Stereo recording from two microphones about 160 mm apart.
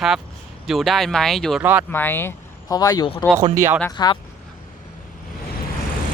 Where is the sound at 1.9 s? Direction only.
15° left (ahead or behind).